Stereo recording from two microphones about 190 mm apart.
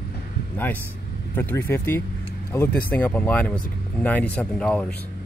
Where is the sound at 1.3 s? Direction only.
10° left (ahead or behind).